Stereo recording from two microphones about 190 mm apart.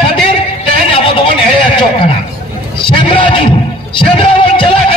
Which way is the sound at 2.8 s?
25° left (ahead or behind).